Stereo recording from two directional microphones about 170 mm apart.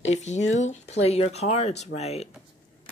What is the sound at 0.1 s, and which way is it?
Speech, 45° left (ahead or behind).